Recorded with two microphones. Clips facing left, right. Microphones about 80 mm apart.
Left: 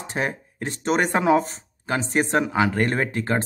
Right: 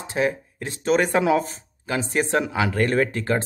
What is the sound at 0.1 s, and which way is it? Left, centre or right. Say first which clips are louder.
Speech: right 4 dB; left.